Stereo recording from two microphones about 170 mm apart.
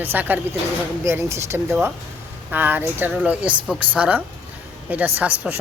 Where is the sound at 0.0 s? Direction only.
10° right (ahead or behind).